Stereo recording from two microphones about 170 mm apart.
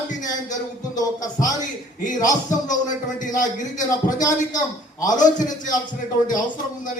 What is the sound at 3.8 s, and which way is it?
A man's voice, 20° left (ahead or behind).